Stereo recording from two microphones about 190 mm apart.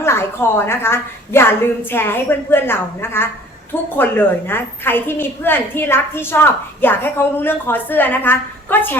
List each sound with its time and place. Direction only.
0.0 s a woman's voice: 15° left (ahead or behind)